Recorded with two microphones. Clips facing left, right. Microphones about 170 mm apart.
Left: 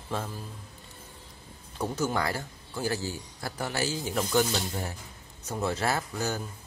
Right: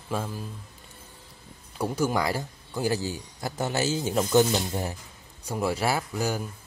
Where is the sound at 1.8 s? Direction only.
10° right (ahead or behind).